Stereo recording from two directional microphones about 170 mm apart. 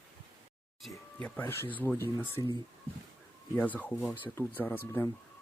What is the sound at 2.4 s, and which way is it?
Speech, 25° left (ahead or behind).